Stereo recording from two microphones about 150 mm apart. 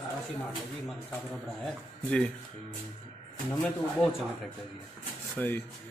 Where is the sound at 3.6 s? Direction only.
5° left (ahead or behind).